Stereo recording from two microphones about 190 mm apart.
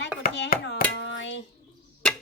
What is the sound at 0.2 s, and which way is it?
Chopping, 60° left (ahead or behind).